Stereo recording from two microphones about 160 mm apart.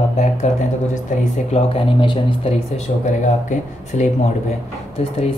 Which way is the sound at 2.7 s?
45° left (ahead or behind).